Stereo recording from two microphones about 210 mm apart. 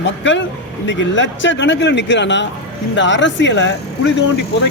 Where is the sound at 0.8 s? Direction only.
60° left (ahead or behind).